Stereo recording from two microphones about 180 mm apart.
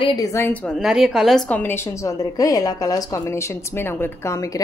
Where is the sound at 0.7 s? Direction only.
Centre (ahead or behind).